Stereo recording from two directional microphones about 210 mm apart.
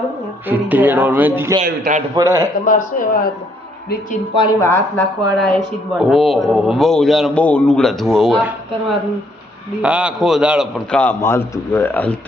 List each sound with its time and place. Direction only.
0.4 s speech: 10° right (ahead or behind)
1.6 s a man's voice: 40° right (ahead or behind)
2.1 s speech: 15° right (ahead or behind)
2.6 s speech: 40° left (ahead or behind)
4.4 s speech: 15° left (ahead or behind); by 8.5 s 5° right (ahead or behind)
9.8 s speech: 5° right (ahead or behind)